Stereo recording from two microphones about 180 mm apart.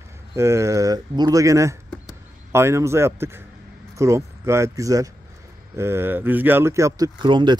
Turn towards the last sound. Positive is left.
turn(degrees=-25)  # may be behind; listen again after turning